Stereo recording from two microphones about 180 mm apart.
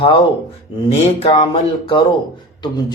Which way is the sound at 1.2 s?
30° left (ahead or behind).